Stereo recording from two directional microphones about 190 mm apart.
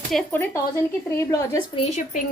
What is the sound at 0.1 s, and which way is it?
Speech, 5° left (ahead or behind).